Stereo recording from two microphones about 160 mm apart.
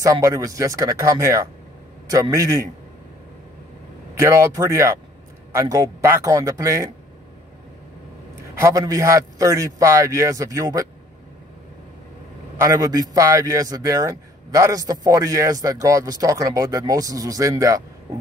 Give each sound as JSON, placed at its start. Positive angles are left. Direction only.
{"t": 0.0, "sound": "a man's voice", "side_deg": -20}
{"t": 4.2, "sound": "a man's voice", "side_deg": -20}
{"t": 8.5, "sound": "a man's voice", "side_deg": -20}
{"t": 12.5, "sound": "a man's voice", "side_deg": -20}